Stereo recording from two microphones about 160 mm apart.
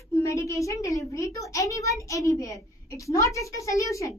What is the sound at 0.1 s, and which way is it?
A child's voice, 20° left (ahead or behind).